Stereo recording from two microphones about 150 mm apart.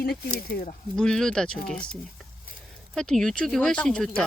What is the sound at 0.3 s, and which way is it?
Speech, 80° left.